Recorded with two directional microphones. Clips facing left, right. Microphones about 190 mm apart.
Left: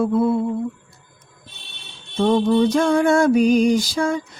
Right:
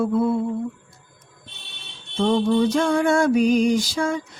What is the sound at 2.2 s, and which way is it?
Mantra, 45° left (ahead or behind).